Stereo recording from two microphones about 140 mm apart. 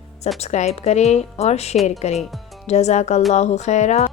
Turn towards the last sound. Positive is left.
turn(degrees=55)  # may be behind; listen again after turning